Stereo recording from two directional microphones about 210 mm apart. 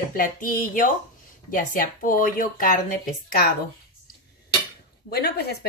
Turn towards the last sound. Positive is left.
turn(degrees=45)  # may be behind; listen again after turning